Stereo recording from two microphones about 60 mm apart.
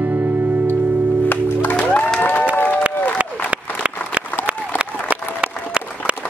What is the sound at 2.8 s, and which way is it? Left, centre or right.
Applause, right.